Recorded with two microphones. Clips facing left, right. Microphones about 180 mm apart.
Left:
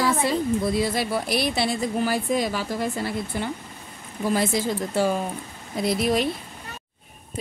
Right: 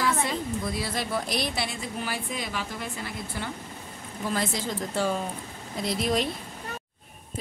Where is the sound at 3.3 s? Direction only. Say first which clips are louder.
Left 5 dB; 20° left (ahead or behind).